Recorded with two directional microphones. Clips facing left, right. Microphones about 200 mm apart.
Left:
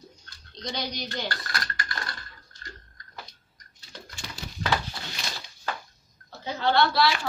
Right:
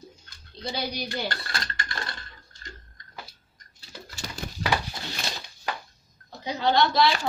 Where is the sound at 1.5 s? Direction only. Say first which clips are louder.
Even; 25° right (ahead or behind).